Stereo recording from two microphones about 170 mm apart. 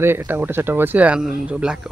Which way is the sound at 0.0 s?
15° right (ahead or behind).